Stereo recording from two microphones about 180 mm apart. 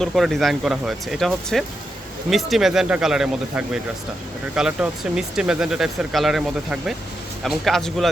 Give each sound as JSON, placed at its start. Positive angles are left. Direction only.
{"t": 0.0, "sound": "speech", "side_deg": 0}